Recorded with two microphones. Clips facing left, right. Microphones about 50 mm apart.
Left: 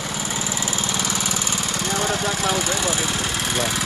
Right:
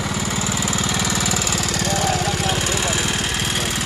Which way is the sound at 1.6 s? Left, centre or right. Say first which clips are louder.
Right 2 dB; right.